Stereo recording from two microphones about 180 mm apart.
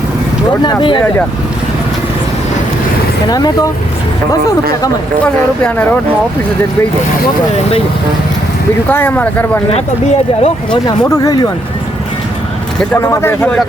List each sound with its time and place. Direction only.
0.6 s speech: 25° left (ahead or behind)
3.3 s speech: 20° left (ahead or behind)
5.2 s speech: 10° left (ahead or behind)
8.9 s speech: 10° left (ahead or behind)
9.7 s speech: 35° left (ahead or behind)
10.8 s speech: 20° left (ahead or behind)
12.8 s speech: 10° left (ahead or behind)